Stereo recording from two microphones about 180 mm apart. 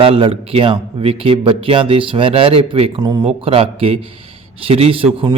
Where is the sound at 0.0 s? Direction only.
30° right (ahead or behind).